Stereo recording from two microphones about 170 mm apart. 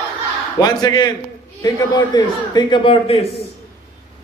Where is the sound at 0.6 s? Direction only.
25° left (ahead or behind).